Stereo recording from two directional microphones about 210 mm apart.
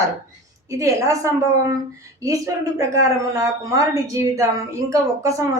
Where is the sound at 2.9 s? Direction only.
15° right (ahead or behind).